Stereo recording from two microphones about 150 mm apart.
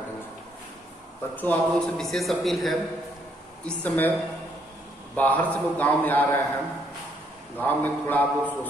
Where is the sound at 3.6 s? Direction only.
10° left (ahead or behind).